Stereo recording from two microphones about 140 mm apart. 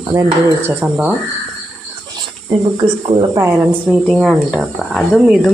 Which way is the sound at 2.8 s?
40° right (ahead or behind).